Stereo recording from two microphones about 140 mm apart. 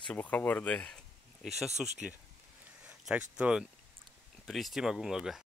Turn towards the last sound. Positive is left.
turn(degrees=-5)  # may be behind; listen again after turning